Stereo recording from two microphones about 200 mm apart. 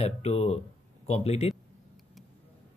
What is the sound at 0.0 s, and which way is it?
Speech, 30° left (ahead or behind).